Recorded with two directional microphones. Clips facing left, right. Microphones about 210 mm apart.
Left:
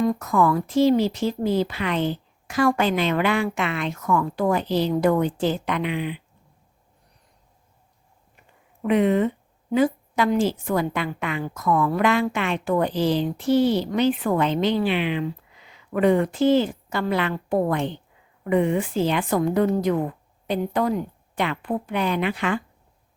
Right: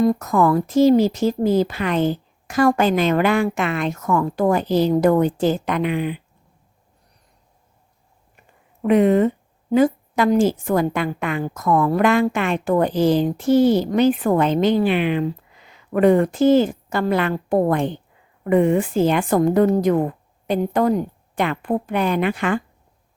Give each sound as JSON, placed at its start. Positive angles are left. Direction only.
{"t": 0.0, "sound": "a woman's voice", "side_deg": -40}
{"t": 8.8, "sound": "a woman's voice", "side_deg": -45}